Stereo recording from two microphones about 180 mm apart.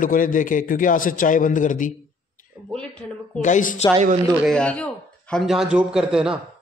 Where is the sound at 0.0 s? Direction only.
50° left (ahead or behind).